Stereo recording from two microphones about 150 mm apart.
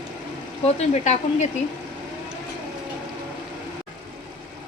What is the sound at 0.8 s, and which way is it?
Speech, 45° left (ahead or behind).